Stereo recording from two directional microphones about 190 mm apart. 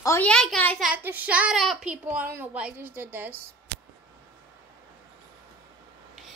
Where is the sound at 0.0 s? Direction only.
10° left (ahead or behind).